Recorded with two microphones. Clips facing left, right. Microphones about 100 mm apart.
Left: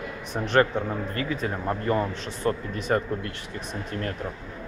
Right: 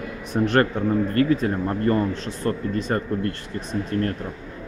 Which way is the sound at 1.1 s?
45° right (ahead or behind).